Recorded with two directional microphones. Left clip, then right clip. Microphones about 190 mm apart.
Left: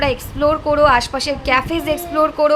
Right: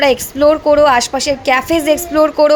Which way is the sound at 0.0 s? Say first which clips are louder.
Right 6 dB; 25° right (ahead or behind).